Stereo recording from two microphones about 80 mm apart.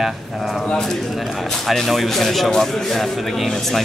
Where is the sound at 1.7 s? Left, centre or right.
Centre.